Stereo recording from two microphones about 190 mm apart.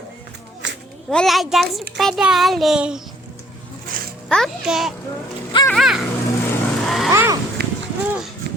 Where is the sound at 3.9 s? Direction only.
45° right (ahead or behind).